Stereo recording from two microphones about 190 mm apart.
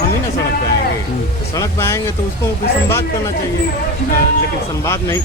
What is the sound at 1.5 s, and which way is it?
Speech, 15° left (ahead or behind).